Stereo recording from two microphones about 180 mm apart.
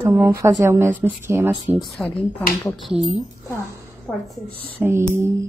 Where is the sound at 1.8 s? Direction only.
5° left (ahead or behind).